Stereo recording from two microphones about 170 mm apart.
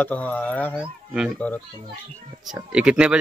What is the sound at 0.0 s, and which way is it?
Speech, 10° left (ahead or behind).